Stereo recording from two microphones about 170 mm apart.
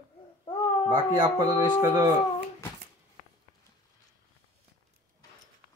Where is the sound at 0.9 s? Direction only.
30° right (ahead or behind).